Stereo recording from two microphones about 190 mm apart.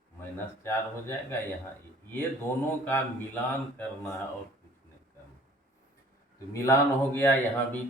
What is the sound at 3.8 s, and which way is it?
Speech, 10° left (ahead or behind).